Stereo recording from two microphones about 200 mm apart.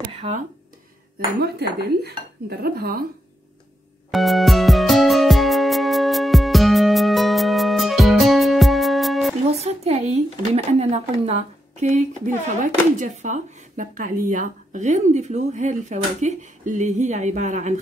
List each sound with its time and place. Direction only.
1.4 s cutlery: 55° right (ahead or behind)
4.1 s music: centre (ahead or behind)
9.5 s speech: 30° right (ahead or behind)